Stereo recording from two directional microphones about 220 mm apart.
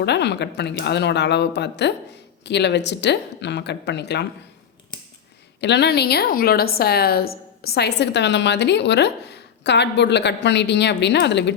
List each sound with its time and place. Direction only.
0.0 s a woman's voice: 50° left (ahead or behind)
5.5 s a woman's voice: 50° left (ahead or behind)